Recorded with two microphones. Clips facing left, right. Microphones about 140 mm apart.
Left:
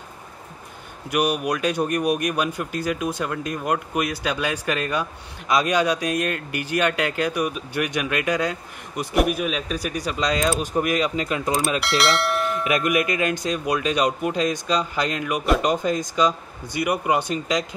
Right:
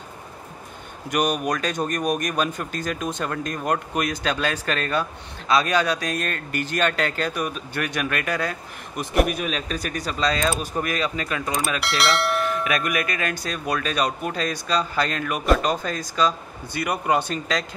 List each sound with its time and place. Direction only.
1.1 s speech: 5° left (ahead or behind)
9.1 s speech: 5° left (ahead or behind); by 11.5 s 20° left (ahead or behind)
11.8 s speech: centre (ahead or behind)
12.6 s speech: 20° left (ahead or behind)